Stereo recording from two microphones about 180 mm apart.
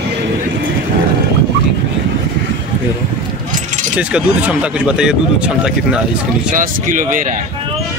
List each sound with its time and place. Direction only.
3.9 s speech: 10° right (ahead or behind)
6.5 s speech: 45° right (ahead or behind)